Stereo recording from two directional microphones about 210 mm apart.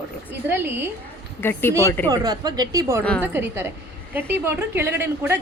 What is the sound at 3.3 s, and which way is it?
A woman's voice, 10° right (ahead or behind).